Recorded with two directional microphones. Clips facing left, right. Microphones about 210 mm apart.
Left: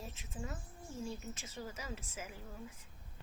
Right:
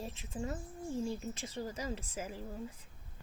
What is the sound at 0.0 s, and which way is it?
Speech, 30° right (ahead or behind).